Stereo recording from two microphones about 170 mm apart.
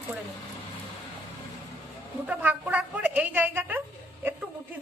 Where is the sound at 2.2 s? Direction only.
10° right (ahead or behind).